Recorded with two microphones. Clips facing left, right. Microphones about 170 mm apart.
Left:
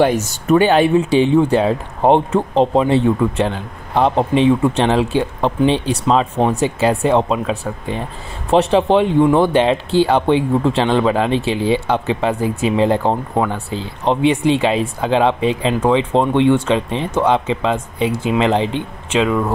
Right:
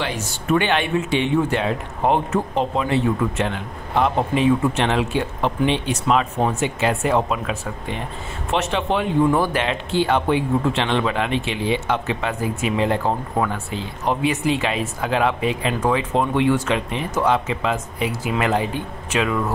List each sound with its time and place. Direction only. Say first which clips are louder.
0.0 s speech: left 11 dB; 45° left (ahead or behind); by 19.3 s 25° left (ahead or behind)